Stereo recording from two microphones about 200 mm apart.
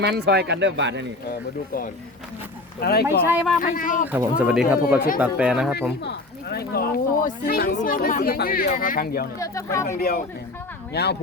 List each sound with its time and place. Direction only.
0.0 s speech: 55° right (ahead or behind)
2.8 s speech: 50° left (ahead or behind)
4.1 s speech: 10° right (ahead or behind)
6.0 s speech: 55° left (ahead or behind)
9.4 s speech: 15° left (ahead or behind)
9.8 s speech: 45° left (ahead or behind)